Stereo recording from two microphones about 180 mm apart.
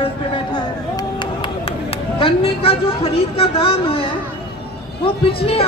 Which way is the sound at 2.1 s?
30° left (ahead or behind).